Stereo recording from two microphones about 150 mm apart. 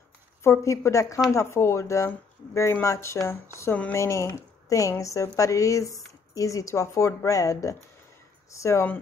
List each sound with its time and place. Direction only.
0.4 s a woman's voice: 20° left (ahead or behind)